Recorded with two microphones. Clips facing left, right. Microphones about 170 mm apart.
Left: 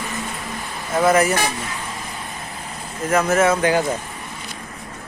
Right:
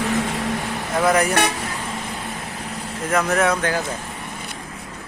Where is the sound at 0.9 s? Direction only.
Centre (ahead or behind).